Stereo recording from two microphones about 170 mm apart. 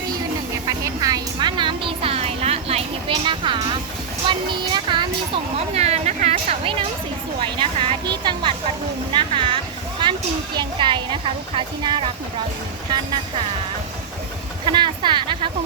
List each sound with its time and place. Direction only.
0.9 s music: 20° right (ahead or behind)
4.3 s speech: 25° right (ahead or behind)
14.6 s speech: 25° right (ahead or behind)